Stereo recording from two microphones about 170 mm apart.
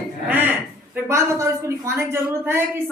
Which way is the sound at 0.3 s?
10° right (ahead or behind).